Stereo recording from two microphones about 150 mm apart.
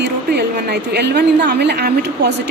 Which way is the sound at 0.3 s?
90° right.